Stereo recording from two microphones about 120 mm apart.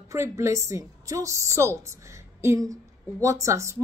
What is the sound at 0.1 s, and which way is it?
A woman's voice, 25° right (ahead or behind).